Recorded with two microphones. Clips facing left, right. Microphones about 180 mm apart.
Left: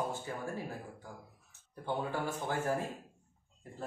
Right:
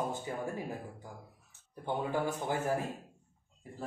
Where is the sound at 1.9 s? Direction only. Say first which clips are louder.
Right 2 dB; 20° right (ahead or behind).